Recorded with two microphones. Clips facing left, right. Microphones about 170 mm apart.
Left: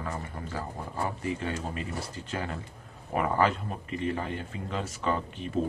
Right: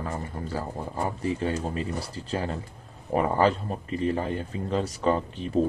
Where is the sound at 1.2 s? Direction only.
35° right (ahead or behind).